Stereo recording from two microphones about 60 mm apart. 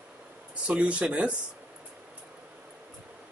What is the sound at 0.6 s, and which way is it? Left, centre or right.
Speech, centre.